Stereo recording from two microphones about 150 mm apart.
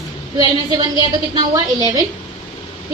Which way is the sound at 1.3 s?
25° right (ahead or behind).